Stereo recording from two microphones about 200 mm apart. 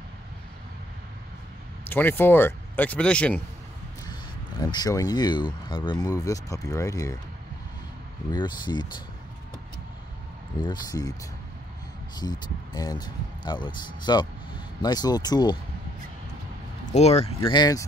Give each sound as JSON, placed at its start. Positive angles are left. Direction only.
{"t": 1.9, "sound": "speech", "side_deg": 10}
{"t": 4.1, "sound": "speech", "side_deg": 20}
{"t": 8.3, "sound": "speech", "side_deg": 20}
{"t": 10.6, "sound": "speech", "side_deg": 20}
{"t": 12.2, "sound": "speech", "side_deg": 20}
{"t": 16.9, "sound": "speech", "side_deg": 30}
{"t": 17.4, "sound": "speech", "side_deg": 20}